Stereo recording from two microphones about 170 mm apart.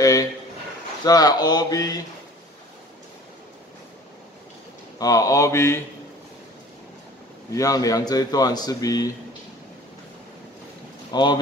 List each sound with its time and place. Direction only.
0.0 s a sound: 20° left (ahead or behind)
1.0 s speech: 25° left (ahead or behind)
4.9 s speech: 20° left (ahead or behind)
7.5 s speech: 20° left (ahead or behind)
11.1 s speech: 25° left (ahead or behind)